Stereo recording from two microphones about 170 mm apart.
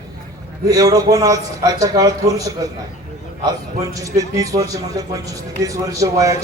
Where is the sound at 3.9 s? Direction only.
20° right (ahead or behind).